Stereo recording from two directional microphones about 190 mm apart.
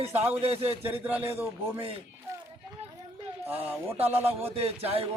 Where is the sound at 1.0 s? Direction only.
10° right (ahead or behind).